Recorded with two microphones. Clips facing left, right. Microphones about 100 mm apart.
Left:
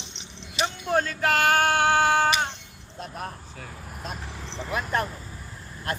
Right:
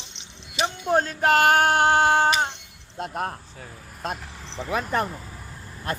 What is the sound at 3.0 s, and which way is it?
Speech, 70° right (ahead or behind).